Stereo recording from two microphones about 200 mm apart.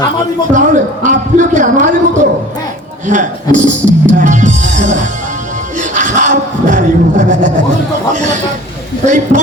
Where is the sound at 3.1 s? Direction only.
40° right (ahead or behind).